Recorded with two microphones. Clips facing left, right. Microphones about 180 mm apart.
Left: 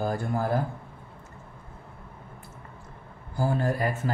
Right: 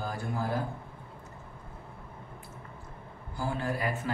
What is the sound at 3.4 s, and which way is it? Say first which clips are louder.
Speech: left 6 dB; 45° left (ahead or behind).